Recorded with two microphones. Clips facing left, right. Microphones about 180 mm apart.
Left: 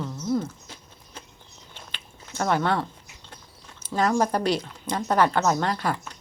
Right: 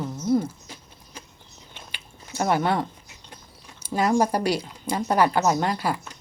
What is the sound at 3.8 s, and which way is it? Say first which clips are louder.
Speech: right 1 dB; 10° right (ahead or behind).